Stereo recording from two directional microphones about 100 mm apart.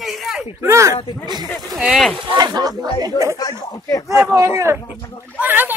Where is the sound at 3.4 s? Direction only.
35° left (ahead or behind).